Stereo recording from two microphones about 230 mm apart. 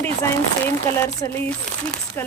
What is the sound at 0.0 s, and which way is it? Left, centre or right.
Speech, centre.